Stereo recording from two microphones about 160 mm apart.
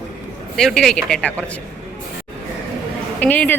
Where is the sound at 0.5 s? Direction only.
Centre (ahead or behind).